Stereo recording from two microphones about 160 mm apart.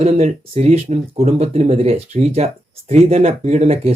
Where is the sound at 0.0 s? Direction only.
45° right (ahead or behind).